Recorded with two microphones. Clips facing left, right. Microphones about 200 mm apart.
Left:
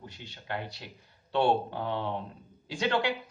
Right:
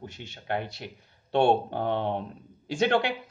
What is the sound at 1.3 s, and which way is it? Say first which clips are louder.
Speech: right 4 dB; 55° right (ahead or behind).